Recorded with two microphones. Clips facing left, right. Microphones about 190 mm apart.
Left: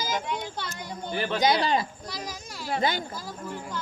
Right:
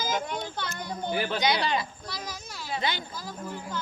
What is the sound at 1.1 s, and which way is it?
Speech, 5° right (ahead or behind).